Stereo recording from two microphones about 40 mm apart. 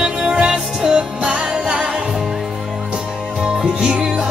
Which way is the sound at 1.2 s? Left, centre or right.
Right.